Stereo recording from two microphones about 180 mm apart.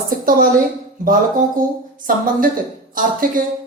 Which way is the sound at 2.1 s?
50° right (ahead or behind).